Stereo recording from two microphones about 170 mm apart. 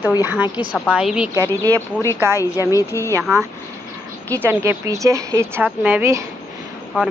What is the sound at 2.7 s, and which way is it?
Speech, 20° left (ahead or behind).